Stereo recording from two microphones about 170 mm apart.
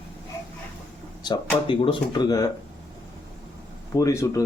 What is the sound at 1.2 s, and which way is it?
Speech, 25° left (ahead or behind).